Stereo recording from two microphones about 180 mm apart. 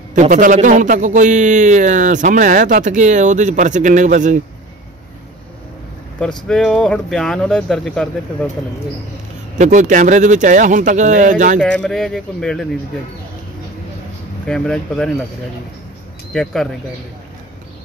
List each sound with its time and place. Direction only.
0.1 s a man's voice: 45° right (ahead or behind)
6.1 s speech: 5° left (ahead or behind)
9.6 s a man's voice: 45° right (ahead or behind)
11.6 s speech: 5° left (ahead or behind)
14.4 s speech: 5° left (ahead or behind)
16.3 s speech: 5° left (ahead or behind)